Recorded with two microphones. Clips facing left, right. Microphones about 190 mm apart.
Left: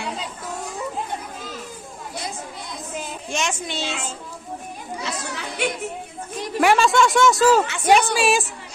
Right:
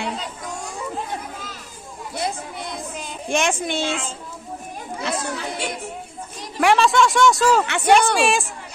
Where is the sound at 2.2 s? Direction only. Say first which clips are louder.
Right 9 dB; 60° right (ahead or behind).